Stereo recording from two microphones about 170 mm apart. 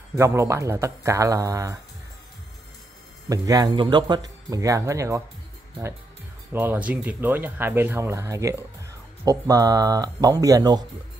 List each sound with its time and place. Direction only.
0.1 s speech: 15° right (ahead or behind)
3.3 s speech: 20° right (ahead or behind)
6.5 s speech: 10° right (ahead or behind)